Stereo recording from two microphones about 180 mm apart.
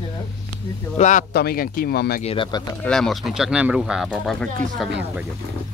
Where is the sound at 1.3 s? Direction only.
60° left (ahead or behind).